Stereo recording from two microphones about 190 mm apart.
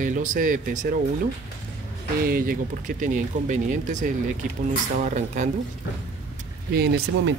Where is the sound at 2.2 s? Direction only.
50° right (ahead or behind).